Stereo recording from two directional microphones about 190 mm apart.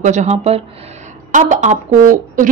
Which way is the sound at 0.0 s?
35° right (ahead or behind).